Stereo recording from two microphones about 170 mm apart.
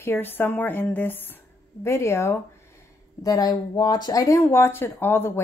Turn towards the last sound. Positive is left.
turn(degrees=15)  # may be behind; listen again after turning